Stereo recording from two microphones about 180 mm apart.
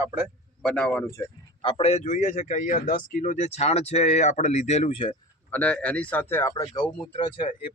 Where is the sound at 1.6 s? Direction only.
30° left (ahead or behind).